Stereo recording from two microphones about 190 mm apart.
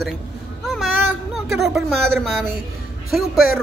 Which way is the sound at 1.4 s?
Centre (ahead or behind).